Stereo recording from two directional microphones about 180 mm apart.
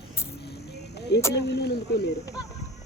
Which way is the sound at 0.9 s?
65° left (ahead or behind).